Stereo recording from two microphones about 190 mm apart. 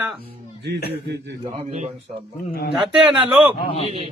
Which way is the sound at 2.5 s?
55° left (ahead or behind).